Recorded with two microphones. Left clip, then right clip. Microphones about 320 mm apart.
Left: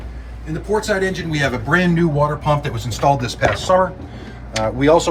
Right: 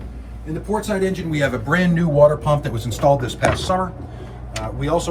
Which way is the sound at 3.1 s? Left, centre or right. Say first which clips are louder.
Even; left.